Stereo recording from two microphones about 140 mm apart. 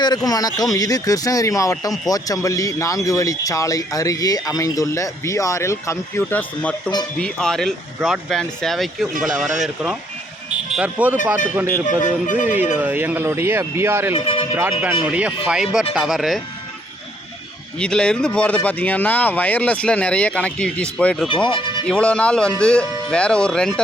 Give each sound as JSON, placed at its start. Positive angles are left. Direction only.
{"t": 0.3, "sound": "speech", "side_deg": 25}
{"t": 12.0, "sound": "speech", "side_deg": 65}
{"t": 12.8, "sound": "speech", "side_deg": -15}
{"t": 14.1, "sound": "speech", "side_deg": 40}
{"t": 14.5, "sound": "speech", "side_deg": -15}
{"t": 17.7, "sound": "speech", "side_deg": 5}
{"t": 21.2, "sound": "speech", "side_deg": 35}
{"t": 21.8, "sound": "speech", "side_deg": 5}